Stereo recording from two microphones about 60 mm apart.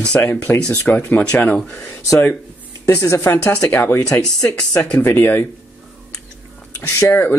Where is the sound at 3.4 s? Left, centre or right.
Left.